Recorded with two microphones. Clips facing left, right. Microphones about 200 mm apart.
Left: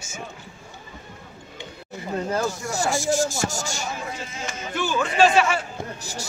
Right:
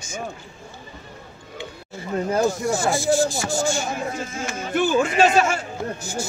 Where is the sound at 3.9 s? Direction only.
50° right (ahead or behind).